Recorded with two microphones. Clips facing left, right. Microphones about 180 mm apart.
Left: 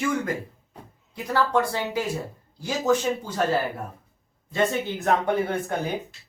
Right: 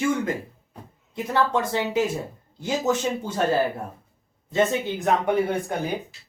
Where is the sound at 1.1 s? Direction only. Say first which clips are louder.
Even; 20° right (ahead or behind).